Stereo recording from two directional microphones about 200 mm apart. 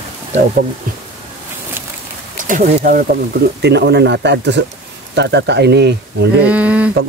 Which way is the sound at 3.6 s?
55° right (ahead or behind).